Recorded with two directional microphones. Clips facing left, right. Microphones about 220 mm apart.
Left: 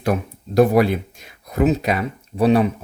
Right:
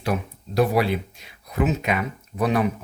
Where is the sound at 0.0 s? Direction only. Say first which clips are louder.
Left 4 dB; 50° left (ahead or behind).